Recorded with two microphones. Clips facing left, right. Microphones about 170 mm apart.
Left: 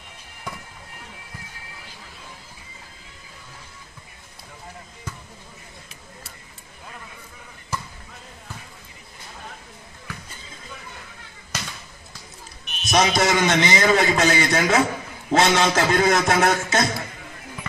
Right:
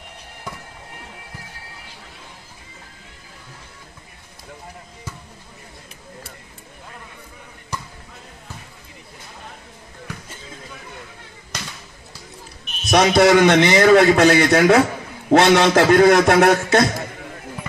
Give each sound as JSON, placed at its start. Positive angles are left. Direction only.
{"t": 12.8, "sound": "a man's voice", "side_deg": -60}